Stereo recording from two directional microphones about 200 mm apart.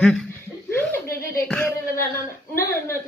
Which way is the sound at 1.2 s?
50° left (ahead or behind).